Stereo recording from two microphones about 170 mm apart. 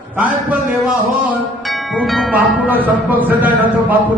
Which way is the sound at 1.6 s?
Centre (ahead or behind).